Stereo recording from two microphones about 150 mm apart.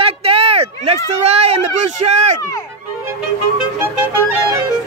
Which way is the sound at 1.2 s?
45° right (ahead or behind).